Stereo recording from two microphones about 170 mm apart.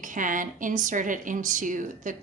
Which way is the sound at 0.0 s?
50° right (ahead or behind).